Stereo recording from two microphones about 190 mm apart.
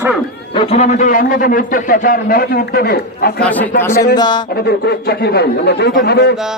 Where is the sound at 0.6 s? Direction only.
35° left (ahead or behind); by 3.4 s 55° left (ahead or behind).